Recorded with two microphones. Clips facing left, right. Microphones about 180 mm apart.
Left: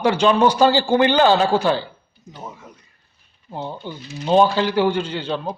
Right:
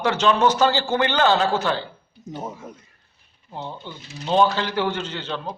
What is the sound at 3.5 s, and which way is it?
A man's voice, 10° left (ahead or behind).